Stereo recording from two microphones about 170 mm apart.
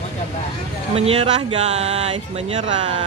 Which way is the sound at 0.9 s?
35° right (ahead or behind).